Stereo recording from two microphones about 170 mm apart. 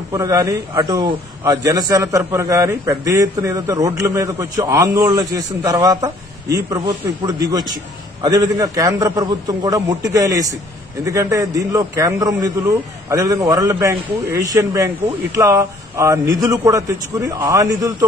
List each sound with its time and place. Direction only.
0.1 s a man's voice: 20° right (ahead or behind)